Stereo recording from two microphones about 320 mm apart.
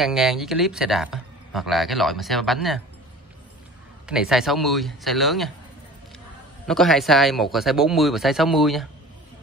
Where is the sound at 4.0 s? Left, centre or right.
Centre.